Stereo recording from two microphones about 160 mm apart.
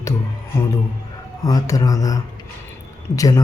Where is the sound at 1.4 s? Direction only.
25° left (ahead or behind).